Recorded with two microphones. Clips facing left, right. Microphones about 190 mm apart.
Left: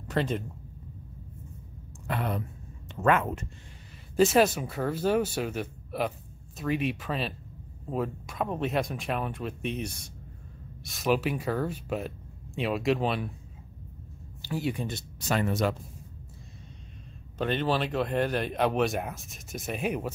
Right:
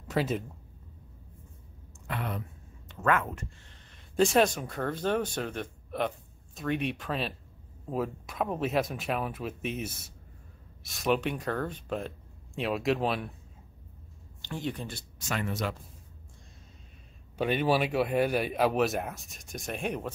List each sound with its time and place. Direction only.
0.1 s speech: 5° right (ahead or behind)
2.0 s speech: 40° left (ahead or behind)
3.0 s speech: 20° left (ahead or behind)
4.2 s speech: 5° left (ahead or behind)
14.4 s speech: 5° left (ahead or behind)
15.1 s speech: 35° left (ahead or behind)
17.4 s speech: 10° right (ahead or behind)